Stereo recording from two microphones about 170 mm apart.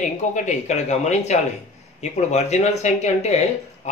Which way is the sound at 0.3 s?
45° left (ahead or behind).